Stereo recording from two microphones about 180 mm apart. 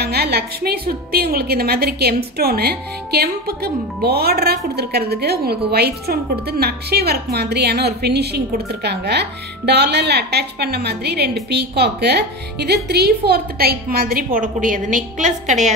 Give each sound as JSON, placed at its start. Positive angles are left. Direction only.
{"t": 0.0, "sound": "a woman's voice", "side_deg": -60}